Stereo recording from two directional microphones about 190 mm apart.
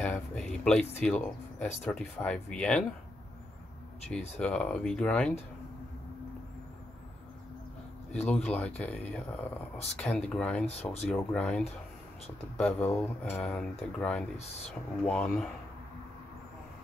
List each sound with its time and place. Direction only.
0.0 s speech: 5° left (ahead or behind)
4.4 s speech: 5° left (ahead or behind)
8.1 s speech: 5° left (ahead or behind)
10.7 s speech: 35° left (ahead or behind)
11.1 s speech: 5° left (ahead or behind)